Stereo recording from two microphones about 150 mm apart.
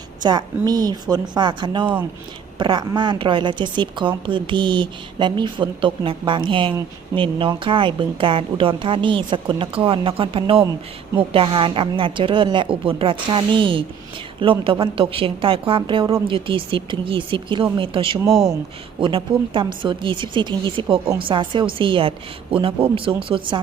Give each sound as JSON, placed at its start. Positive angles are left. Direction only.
{"t": 0.2, "sound": "a woman's voice", "side_deg": -30}